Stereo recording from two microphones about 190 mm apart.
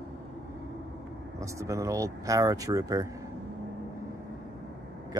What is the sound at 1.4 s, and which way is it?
Speech, 15° right (ahead or behind).